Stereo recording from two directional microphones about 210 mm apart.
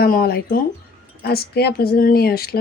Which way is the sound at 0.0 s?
45° left (ahead or behind).